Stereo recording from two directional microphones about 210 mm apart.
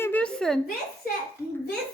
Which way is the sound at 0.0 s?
5° left (ahead or behind).